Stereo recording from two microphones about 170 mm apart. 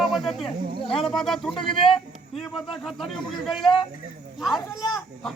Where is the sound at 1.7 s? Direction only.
30° left (ahead or behind).